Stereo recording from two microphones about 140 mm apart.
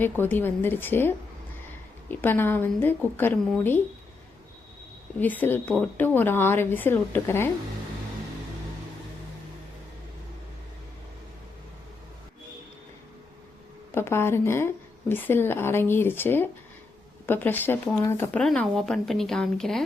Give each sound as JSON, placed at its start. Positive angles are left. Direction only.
{"t": 0.0, "sound": "a woman's voice", "side_deg": 15}
{"t": 5.2, "sound": "a woman's voice", "side_deg": 10}
{"t": 13.9, "sound": "a woman's voice", "side_deg": 20}